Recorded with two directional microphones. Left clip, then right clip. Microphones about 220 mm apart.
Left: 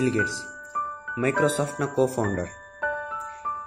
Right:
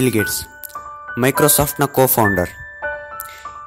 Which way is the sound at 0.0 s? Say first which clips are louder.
Right 6 dB; 50° right (ahead or behind).